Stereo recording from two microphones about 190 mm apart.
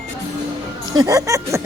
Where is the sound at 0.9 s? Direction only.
20° right (ahead or behind).